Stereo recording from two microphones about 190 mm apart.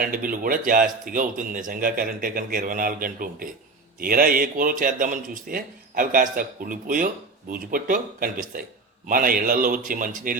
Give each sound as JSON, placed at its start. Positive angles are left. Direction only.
{"t": 0.0, "sound": "speech", "side_deg": -50}